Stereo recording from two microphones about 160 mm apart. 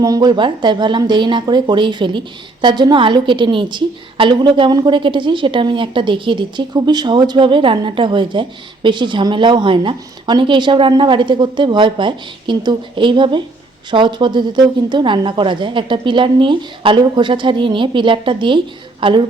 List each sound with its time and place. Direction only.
0.0 s speech: 25° right (ahead or behind)